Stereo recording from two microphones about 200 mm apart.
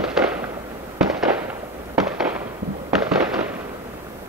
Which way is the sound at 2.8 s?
5° right (ahead or behind).